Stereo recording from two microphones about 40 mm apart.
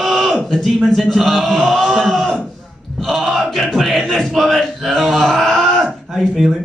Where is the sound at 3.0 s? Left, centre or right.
Centre.